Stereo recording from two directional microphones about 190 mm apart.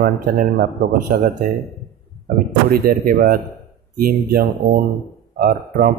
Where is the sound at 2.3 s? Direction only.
50° right (ahead or behind).